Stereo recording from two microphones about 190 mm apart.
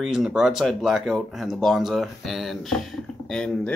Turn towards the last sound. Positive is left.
turn(degrees=5)  # may be behind; listen again after turning